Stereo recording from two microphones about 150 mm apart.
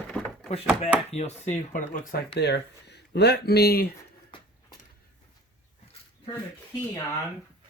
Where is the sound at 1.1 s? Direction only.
50° left (ahead or behind); by 3.8 s 90° left.